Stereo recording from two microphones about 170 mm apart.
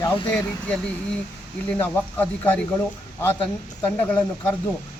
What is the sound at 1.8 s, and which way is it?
Speech, 10° left (ahead or behind).